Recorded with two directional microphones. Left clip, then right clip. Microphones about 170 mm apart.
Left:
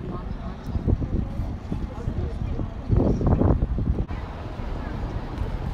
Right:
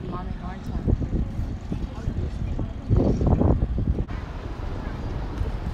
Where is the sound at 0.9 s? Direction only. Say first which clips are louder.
Even; 25° right (ahead or behind).